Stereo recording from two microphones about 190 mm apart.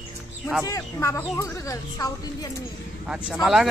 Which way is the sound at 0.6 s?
15° left (ahead or behind).